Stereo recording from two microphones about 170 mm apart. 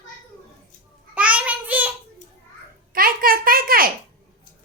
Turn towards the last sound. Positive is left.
turn(degrees=-55)  # may be behind; listen again after turning